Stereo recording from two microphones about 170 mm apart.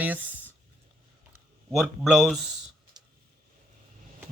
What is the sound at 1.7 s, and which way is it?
Speech, centre (ahead or behind).